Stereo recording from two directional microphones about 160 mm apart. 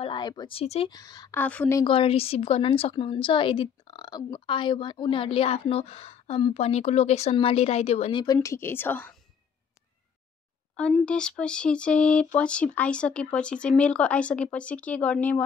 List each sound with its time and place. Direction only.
0.0 s a woman's voice: 30° left (ahead or behind)
0.9 s speech: 25° left (ahead or behind)
1.3 s speech: 10° left (ahead or behind)
1.8 s a woman's voice: 35° left (ahead or behind)
8.2 s speech: 20° left (ahead or behind)
10.8 s speech: centre (ahead or behind)